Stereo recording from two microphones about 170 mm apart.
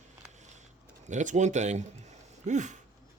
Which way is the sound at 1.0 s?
45° right (ahead or behind).